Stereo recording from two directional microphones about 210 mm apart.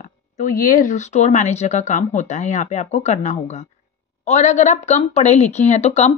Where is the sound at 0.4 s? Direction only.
40° left (ahead or behind).